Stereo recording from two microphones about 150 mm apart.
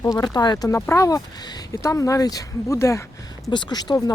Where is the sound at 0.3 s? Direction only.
25° left (ahead or behind).